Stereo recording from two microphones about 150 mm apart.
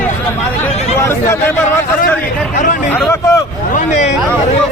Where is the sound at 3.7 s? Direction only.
55° left (ahead or behind).